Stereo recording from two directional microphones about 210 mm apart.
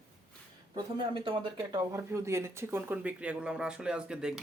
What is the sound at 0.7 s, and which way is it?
Speech, 25° right (ahead or behind).